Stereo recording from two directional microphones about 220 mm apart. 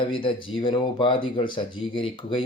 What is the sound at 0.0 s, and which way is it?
Speech, 25° left (ahead or behind).